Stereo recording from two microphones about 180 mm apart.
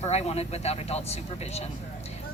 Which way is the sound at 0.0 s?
35° left (ahead or behind).